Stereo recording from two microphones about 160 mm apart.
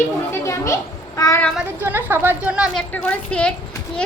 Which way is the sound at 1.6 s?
15° right (ahead or behind).